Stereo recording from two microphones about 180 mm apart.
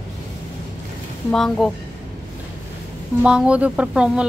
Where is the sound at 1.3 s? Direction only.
Centre (ahead or behind).